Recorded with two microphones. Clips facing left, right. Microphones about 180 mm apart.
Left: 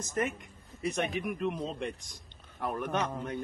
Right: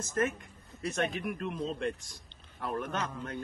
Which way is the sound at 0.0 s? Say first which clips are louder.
Right 1 dB; 15° left (ahead or behind).